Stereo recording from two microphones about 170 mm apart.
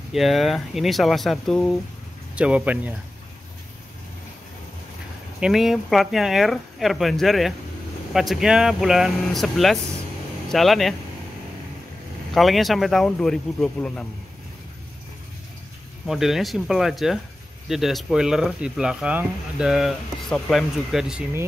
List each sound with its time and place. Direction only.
0.1 s speech: centre (ahead or behind)
5.4 s speech: centre (ahead or behind)
12.4 s speech: centre (ahead or behind)
16.1 s speech: centre (ahead or behind)